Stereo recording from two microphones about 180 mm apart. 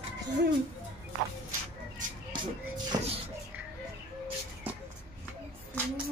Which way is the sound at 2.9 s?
20° right (ahead or behind).